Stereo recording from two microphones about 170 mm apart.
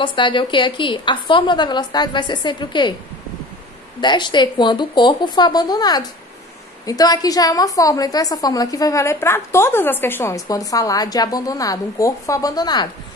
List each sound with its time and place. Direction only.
0.0 s a woman's voice: 30° left (ahead or behind)
4.0 s a woman's voice: 25° left (ahead or behind)